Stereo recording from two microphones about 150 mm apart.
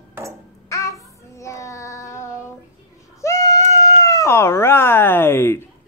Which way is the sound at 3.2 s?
20° left (ahead or behind).